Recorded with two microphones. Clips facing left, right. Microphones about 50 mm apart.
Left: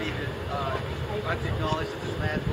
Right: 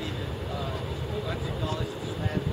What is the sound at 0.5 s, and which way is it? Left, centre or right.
Speech, left.